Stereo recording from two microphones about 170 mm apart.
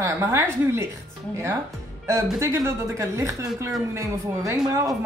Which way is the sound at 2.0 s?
15° right (ahead or behind).